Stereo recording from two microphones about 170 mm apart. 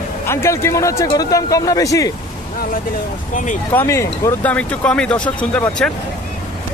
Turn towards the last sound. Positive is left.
turn(degrees=5)  # may be behind; listen again after turning